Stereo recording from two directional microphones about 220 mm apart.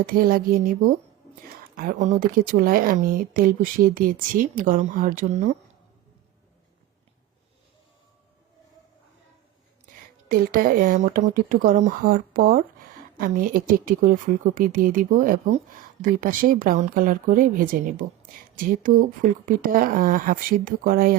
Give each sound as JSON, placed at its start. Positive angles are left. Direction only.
{"t": 0.0, "sound": "a woman's voice", "side_deg": -40}
{"t": 9.8, "sound": "a woman's voice", "side_deg": -40}